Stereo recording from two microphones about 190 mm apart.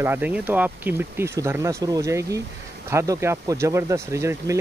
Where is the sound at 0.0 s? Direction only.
10° right (ahead or behind).